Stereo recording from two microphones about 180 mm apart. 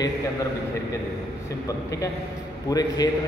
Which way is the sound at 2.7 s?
20° left (ahead or behind).